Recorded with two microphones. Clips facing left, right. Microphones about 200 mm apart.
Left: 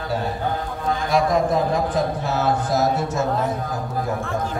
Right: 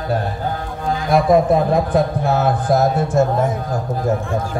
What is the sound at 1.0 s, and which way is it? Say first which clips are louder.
Speech: right 6 dB; 55° right (ahead or behind).